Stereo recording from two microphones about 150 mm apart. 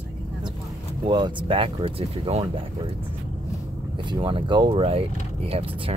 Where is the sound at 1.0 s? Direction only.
35° right (ahead or behind).